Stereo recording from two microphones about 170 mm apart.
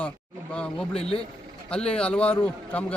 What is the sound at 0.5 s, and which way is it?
A man's voice, 5° left (ahead or behind).